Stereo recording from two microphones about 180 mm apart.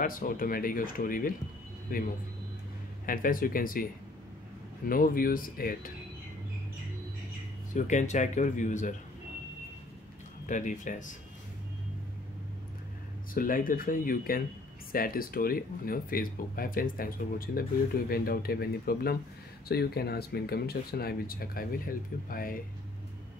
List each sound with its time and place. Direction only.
0.0 s speech: 50° left (ahead or behind)
3.1 s speech: 50° left (ahead or behind)
4.8 s speech: 50° left (ahead or behind)
7.7 s speech: 45° left (ahead or behind)
10.4 s speech: 45° left (ahead or behind)
13.3 s speech: 50° left (ahead or behind)